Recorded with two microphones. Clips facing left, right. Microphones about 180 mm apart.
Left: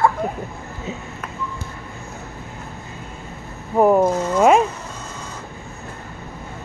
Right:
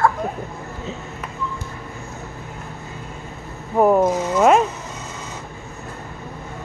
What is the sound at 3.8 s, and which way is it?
Speech, centre (ahead or behind).